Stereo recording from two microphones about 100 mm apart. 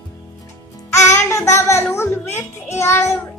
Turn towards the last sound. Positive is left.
turn(degrees=25)  # may be behind; listen again after turning